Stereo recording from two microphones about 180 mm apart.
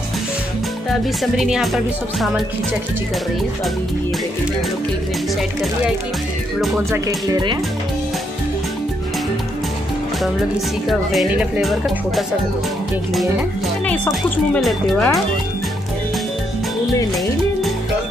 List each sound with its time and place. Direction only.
1.2 s a woman's voice: centre (ahead or behind)
6.9 s speech: 20° right (ahead or behind)
10.9 s a woman's voice: centre (ahead or behind)
13.8 s speech: 5° left (ahead or behind)